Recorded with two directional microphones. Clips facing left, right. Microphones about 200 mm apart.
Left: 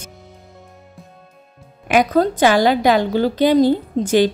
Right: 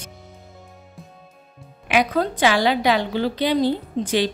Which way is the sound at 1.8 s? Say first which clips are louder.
Left 5 dB; 45° left (ahead or behind).